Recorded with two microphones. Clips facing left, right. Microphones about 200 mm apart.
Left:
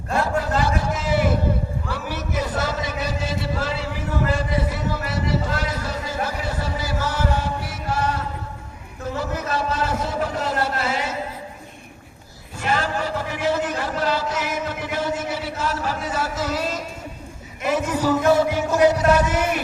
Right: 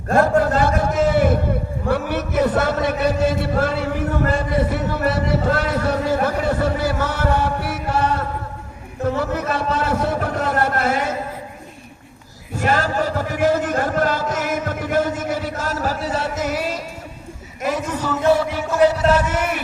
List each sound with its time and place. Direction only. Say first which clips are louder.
0.1 s a sound: right 6 dB; 50° right (ahead or behind)
12.5 s a man's voice: right 4 dB; 45° right (ahead or behind)
16.4 s music: right 2 dB; 15° right (ahead or behind)
18.5 s a man's voice: right 1 dB; 20° left (ahead or behind)